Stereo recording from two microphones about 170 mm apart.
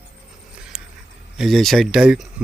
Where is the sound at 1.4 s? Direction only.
Centre (ahead or behind).